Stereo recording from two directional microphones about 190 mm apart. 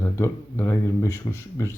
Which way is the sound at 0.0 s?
15° left (ahead or behind).